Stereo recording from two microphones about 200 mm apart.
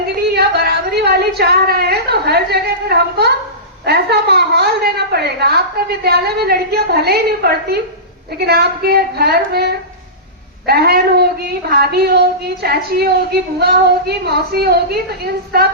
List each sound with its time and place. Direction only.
0.3 s a woman's voice: 55° right (ahead or behind)